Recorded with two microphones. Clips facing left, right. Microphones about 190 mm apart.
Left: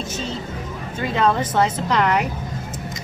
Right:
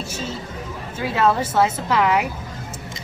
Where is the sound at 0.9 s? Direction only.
5° right (ahead or behind).